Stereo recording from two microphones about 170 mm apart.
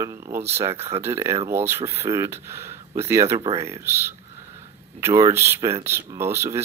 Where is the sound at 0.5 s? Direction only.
15° right (ahead or behind).